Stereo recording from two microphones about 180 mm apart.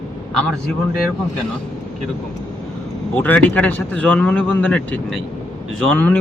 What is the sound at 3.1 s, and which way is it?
Speech, 10° left (ahead or behind).